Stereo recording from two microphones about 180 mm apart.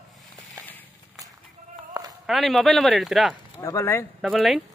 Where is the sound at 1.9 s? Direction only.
20° right (ahead or behind).